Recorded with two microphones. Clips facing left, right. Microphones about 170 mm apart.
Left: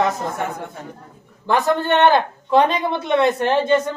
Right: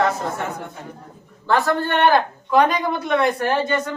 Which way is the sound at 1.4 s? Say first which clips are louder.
Left 1 dB; 20° left (ahead or behind).